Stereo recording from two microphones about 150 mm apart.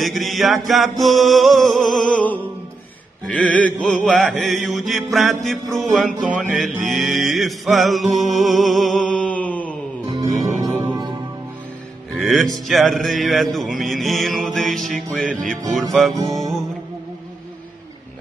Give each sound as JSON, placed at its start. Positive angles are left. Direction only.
{"t": 0.0, "sound": "mantra", "side_deg": 0}
{"t": 2.0, "sound": "music", "side_deg": 10}
{"t": 3.3, "sound": "mantra", "side_deg": 10}
{"t": 10.2, "sound": "music", "side_deg": -20}
{"t": 12.2, "sound": "mantra", "side_deg": 0}